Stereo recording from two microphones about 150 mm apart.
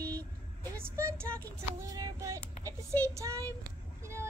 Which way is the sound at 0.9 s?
15° right (ahead or behind).